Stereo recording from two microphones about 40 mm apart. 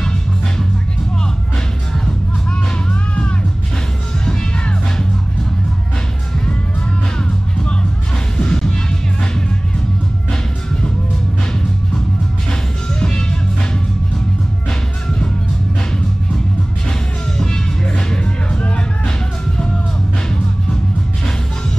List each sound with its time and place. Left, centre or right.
8.4 s music: left
13.0 s music: left
17.4 s music: left